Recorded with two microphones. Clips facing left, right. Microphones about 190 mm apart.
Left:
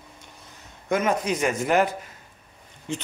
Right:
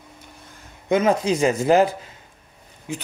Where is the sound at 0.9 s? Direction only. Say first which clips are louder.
Right 5 dB; 30° right (ahead or behind).